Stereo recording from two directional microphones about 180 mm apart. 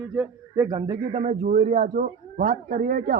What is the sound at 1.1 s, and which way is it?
A man's voice, 40° right (ahead or behind).